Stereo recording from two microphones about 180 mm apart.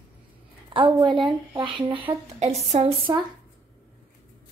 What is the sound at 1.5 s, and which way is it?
Speech, 25° right (ahead or behind).